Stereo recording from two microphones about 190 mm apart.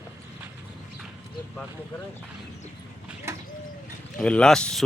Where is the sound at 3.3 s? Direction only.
15° right (ahead or behind).